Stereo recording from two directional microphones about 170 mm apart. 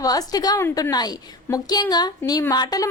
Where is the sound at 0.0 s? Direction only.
20° left (ahead or behind).